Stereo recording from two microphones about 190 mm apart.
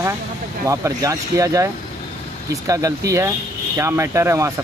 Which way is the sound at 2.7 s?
15° right (ahead or behind).